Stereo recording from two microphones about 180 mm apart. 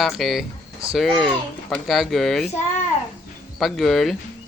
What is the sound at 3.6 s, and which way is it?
Speech, centre (ahead or behind).